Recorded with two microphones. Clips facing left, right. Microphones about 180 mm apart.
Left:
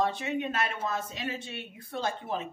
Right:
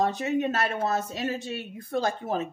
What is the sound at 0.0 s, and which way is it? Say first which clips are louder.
Speech: right 4 dB; 40° right (ahead or behind).